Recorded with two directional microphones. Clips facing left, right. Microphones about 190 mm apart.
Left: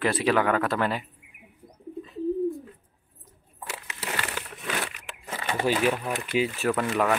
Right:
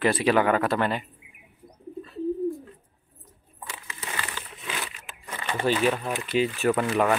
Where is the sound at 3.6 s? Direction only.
70° left (ahead or behind).